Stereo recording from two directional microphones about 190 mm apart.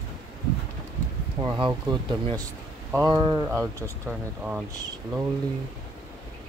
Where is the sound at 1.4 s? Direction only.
25° right (ahead or behind).